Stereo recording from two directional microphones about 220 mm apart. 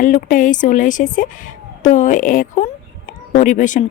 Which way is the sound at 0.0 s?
35° left (ahead or behind).